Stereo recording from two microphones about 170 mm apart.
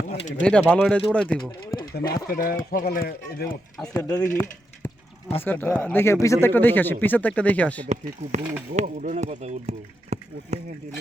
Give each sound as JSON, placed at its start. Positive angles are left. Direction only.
{"t": 0.2, "sound": "speech", "side_deg": 45}
{"t": 0.4, "sound": "speech", "side_deg": 5}
{"t": 1.5, "sound": "a sound", "side_deg": 25}
{"t": 2.2, "sound": "speech", "side_deg": 60}
{"t": 3.9, "sound": "speech", "side_deg": 20}
{"t": 8.2, "sound": "speech", "side_deg": -40}